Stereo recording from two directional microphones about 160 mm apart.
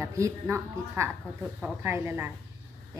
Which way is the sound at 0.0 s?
15° right (ahead or behind).